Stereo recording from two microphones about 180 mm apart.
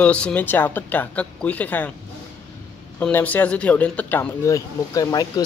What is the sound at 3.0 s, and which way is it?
A woman's voice, 10° left (ahead or behind).